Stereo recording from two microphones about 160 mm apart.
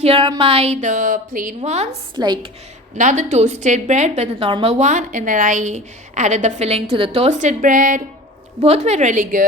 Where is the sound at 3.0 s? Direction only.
50° right (ahead or behind).